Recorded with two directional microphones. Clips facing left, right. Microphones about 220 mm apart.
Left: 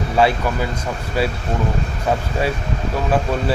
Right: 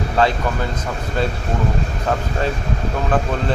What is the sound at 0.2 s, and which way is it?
Speech, 10° left (ahead or behind).